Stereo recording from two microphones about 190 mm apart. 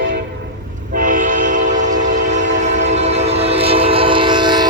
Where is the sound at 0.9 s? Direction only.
45° right (ahead or behind); by 4.6 s 25° right (ahead or behind).